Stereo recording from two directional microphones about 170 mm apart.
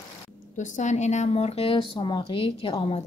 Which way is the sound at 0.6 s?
45° left (ahead or behind).